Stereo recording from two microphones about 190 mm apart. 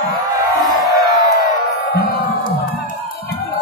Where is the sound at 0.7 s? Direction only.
Centre (ahead or behind).